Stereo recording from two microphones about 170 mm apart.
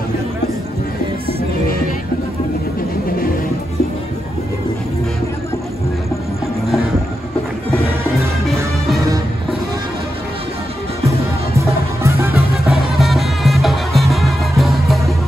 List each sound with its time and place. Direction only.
11.5 s music: 15° right (ahead or behind)
13.0 s music: centre (ahead or behind)